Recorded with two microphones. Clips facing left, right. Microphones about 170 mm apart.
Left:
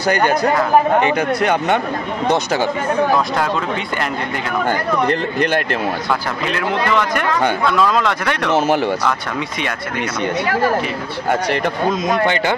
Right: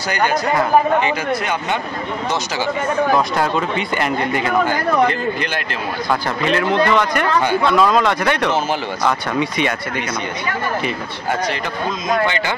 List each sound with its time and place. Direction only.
1.0 s speech: 60° left (ahead or behind)
6.4 s speech: 5° left (ahead or behind)